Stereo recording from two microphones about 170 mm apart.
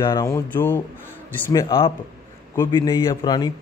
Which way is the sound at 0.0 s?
20° left (ahead or behind).